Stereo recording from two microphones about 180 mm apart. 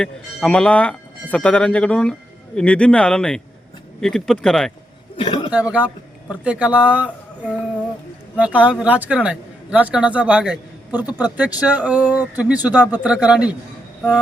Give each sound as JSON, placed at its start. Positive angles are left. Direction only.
{"t": 0.0, "sound": "speech", "side_deg": 5}
{"t": 5.1, "sound": "a sound", "side_deg": 25}
{"t": 5.7, "sound": "a man's voice", "side_deg": -5}